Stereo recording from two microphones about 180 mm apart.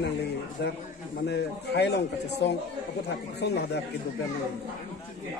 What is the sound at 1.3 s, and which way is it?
A man's voice, 70° left (ahead or behind).